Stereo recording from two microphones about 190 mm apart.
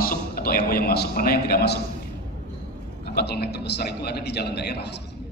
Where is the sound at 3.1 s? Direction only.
60° left (ahead or behind).